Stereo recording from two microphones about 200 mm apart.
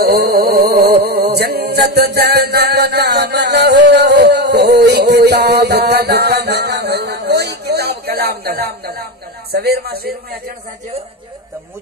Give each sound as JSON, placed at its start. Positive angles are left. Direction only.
{"t": 0.0, "sound": "music", "side_deg": -55}
{"t": 9.5, "sound": "speech", "side_deg": -55}